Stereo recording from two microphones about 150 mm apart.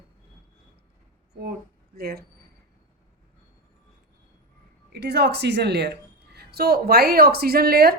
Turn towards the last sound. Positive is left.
turn(degrees=-90)